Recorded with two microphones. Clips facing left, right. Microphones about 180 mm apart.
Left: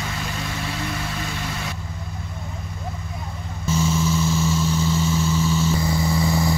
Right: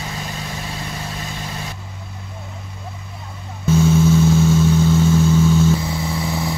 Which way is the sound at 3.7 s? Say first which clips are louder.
Right 7 dB; 60° right (ahead or behind).